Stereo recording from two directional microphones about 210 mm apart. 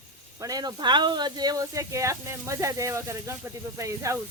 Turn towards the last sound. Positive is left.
turn(degrees=-15)  # may be behind; listen again after turning